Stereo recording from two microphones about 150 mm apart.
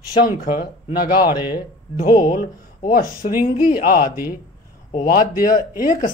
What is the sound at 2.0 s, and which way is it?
Speech, 65° left (ahead or behind).